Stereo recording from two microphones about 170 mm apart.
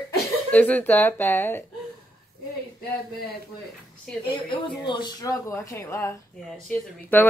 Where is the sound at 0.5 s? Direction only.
10° left (ahead or behind).